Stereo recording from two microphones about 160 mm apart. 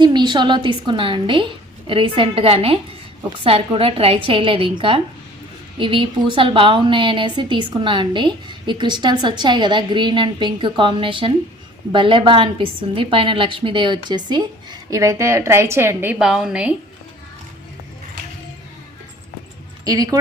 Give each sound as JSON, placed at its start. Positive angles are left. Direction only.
{"t": 0.0, "sound": "a woman's voice", "side_deg": -30}
{"t": 16.1, "sound": "a woman's voice", "side_deg": 0}
{"t": 19.8, "sound": "speech", "side_deg": -25}